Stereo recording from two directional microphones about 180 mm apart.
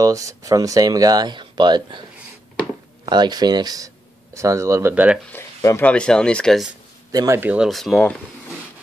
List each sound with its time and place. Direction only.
0.0 s speech: 20° right (ahead or behind)
3.1 s speech: 25° right (ahead or behind)
5.3 s speech: 15° left (ahead or behind)
7.1 s speech: 20° right (ahead or behind); by 8.1 s centre (ahead or behind)